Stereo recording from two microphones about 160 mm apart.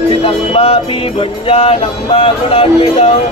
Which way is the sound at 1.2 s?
35° left (ahead or behind).